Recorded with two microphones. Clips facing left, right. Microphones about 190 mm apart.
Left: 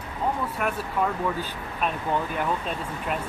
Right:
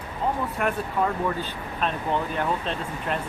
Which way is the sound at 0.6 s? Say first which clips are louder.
Right 3 dB; centre (ahead or behind).